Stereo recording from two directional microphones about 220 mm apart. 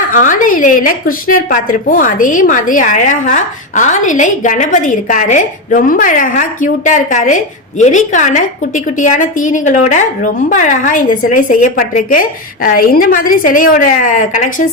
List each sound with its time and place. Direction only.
0.1 s a woman's voice: 35° left (ahead or behind)